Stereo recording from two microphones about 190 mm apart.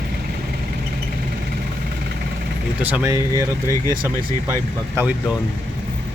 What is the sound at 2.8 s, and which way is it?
Speech, 10° right (ahead or behind).